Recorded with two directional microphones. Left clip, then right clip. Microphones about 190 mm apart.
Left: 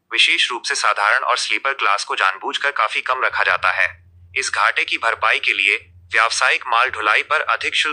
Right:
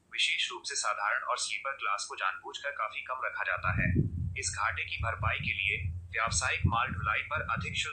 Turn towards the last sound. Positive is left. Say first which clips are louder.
# left 15 dB
turn(degrees=40)  # may be behind; listen again after turning